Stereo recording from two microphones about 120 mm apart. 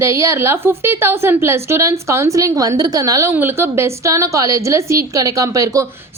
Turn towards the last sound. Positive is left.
turn(degrees=-30)  # may be behind; listen again after turning